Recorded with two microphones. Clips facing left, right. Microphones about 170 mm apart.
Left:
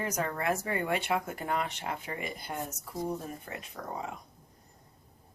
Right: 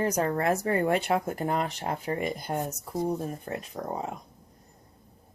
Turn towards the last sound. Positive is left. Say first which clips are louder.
# right 5 dB
turn(degrees=-40)  # may be behind; listen again after turning